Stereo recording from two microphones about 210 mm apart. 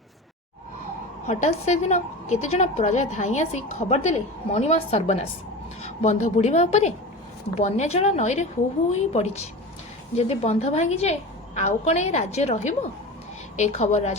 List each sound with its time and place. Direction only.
1.3 s a woman's voice: 30° left (ahead or behind)
5.8 s a sound: 30° left (ahead or behind)
6.3 s a woman's voice: 30° left (ahead or behind)